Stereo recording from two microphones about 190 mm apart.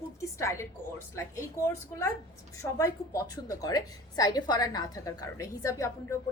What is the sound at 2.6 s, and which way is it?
A woman's voice, 15° left (ahead or behind).